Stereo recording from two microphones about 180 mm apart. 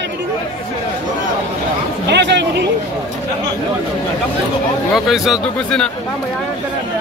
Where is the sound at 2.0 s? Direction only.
70° right (ahead or behind).